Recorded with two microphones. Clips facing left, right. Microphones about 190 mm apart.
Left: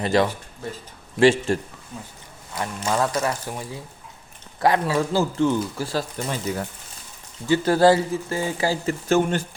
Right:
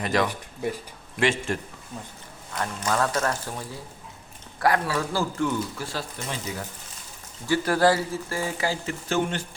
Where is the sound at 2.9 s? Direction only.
15° left (ahead or behind); by 6.0 s 35° left (ahead or behind).